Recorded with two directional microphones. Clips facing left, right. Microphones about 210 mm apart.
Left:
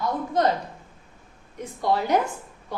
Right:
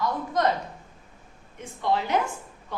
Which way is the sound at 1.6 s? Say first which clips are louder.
Left 2 dB; 40° left (ahead or behind).